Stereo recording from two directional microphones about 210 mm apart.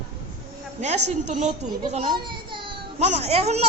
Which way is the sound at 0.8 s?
35° right (ahead or behind).